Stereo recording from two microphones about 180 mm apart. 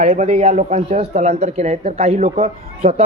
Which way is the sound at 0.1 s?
40° right (ahead or behind).